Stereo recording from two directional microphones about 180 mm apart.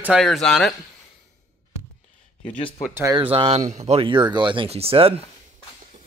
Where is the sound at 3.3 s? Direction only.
35° right (ahead or behind).